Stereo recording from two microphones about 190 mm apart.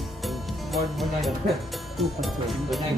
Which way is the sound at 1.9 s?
Centre (ahead or behind).